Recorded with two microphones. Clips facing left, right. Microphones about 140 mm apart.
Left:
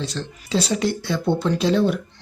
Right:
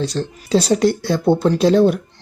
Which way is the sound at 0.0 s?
40° right (ahead or behind).